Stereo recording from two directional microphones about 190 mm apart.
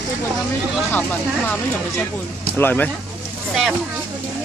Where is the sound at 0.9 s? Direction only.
10° left (ahead or behind).